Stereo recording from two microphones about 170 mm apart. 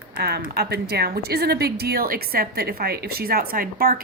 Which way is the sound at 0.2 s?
70° right (ahead or behind).